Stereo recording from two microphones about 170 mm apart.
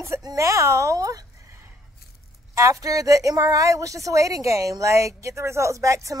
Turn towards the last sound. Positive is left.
turn(degrees=-20)  # may be behind; listen again after turning